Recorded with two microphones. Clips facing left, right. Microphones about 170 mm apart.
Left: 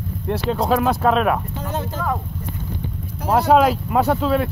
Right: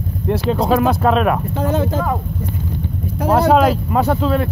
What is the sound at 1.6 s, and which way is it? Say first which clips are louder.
Speech: right 9 dB; 90° right.